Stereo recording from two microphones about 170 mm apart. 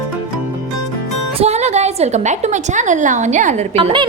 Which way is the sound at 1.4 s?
40° right (ahead or behind).